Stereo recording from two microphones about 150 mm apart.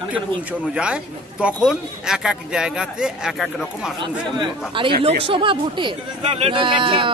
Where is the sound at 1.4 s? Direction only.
5° right (ahead or behind).